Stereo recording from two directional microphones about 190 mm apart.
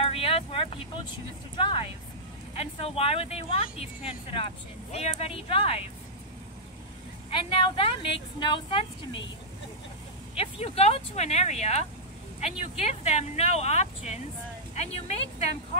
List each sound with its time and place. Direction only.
0.0 s vehicle: 30° left (ahead or behind)
1.6 s speech: 25° left (ahead or behind)
7.2 s speech: 30° left (ahead or behind)
10.3 s speech: 30° left (ahead or behind)